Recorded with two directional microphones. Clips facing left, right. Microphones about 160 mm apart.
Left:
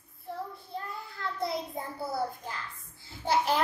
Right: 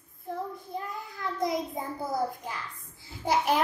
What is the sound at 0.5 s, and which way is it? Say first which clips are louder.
Child singing: right 3 dB; 15° right (ahead or behind).